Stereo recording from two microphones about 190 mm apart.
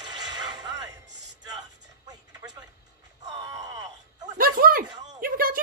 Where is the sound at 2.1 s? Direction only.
20° right (ahead or behind).